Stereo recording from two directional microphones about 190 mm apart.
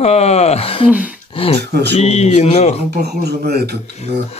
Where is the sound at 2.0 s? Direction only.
35° left (ahead or behind).